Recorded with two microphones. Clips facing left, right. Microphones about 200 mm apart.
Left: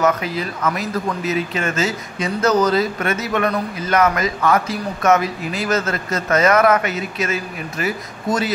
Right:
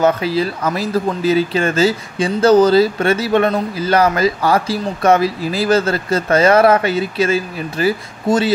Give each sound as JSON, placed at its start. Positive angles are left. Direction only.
{"t": 0.0, "sound": "speech", "side_deg": -30}